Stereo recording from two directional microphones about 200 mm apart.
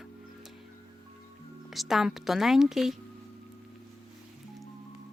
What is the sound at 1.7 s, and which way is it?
Speech, centre (ahead or behind).